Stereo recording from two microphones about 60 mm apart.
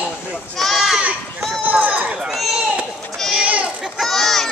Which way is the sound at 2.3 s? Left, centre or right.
Centre.